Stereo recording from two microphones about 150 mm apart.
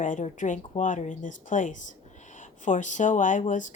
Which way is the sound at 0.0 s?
55° left (ahead or behind).